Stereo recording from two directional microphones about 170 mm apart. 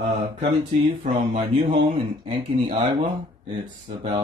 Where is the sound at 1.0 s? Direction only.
30° right (ahead or behind).